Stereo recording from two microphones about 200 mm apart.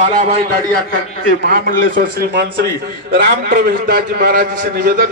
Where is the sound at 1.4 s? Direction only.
50° right (ahead or behind).